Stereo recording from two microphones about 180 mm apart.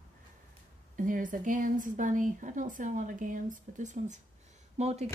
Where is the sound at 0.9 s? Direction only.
50° right (ahead or behind).